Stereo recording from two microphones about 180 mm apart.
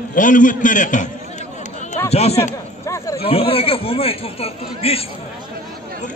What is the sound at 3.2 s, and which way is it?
Speech, 30° left (ahead or behind).